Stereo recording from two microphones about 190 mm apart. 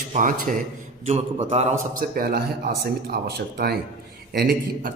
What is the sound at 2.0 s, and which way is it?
A man's voice, 50° right (ahead or behind).